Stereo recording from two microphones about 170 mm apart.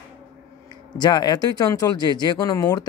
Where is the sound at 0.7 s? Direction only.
25° left (ahead or behind).